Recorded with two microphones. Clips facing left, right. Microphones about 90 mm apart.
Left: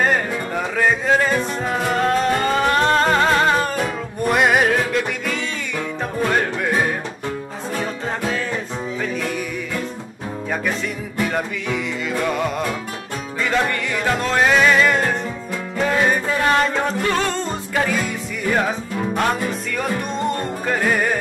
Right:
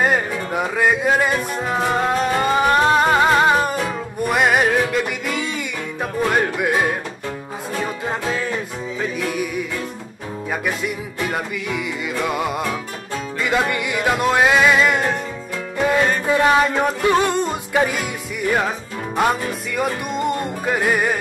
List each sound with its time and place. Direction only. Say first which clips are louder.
0.0 s music: even; 10° right (ahead or behind)
4.3 s music: left 1 dB; centre (ahead or behind)
10.5 s music: even; 10° right (ahead or behind)
16.3 s music: right 2 dB; 10° right (ahead or behind)
19.1 s music: right 3 dB; 5° right (ahead or behind)